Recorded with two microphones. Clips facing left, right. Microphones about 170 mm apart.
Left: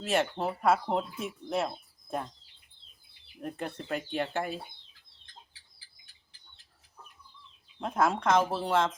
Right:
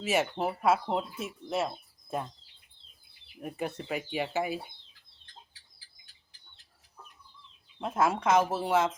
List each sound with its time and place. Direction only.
0.0 s speech: 5° right (ahead or behind)
3.4 s speech: 10° right (ahead or behind)
7.8 s speech: 5° right (ahead or behind)